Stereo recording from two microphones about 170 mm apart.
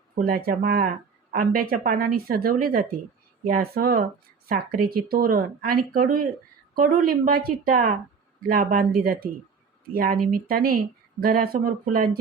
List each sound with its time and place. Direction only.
0.2 s speech: 60° right (ahead or behind)